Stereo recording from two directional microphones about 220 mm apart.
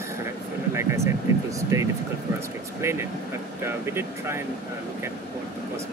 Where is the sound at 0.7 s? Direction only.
15° right (ahead or behind).